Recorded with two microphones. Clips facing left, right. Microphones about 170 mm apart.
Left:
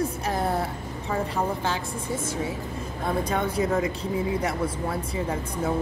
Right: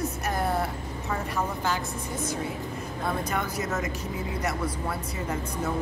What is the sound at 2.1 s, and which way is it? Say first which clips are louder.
Speech: left 3 dB; 25° left (ahead or behind).